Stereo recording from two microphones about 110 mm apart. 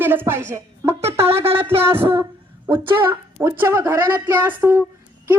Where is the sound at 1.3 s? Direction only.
60° right (ahead or behind).